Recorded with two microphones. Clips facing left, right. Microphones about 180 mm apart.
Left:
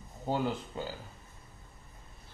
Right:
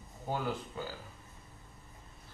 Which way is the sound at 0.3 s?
20° left (ahead or behind).